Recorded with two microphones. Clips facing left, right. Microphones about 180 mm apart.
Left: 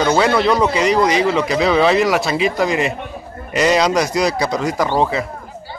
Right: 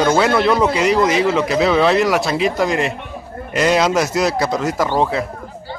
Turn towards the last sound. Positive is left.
turn(degrees=0)  # may be behind; listen again after turning